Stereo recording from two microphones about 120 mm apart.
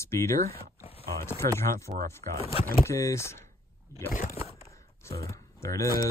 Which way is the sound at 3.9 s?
25° left (ahead or behind).